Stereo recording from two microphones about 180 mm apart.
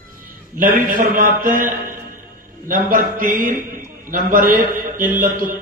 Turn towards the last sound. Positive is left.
turn(degrees=-50)  # may be behind; listen again after turning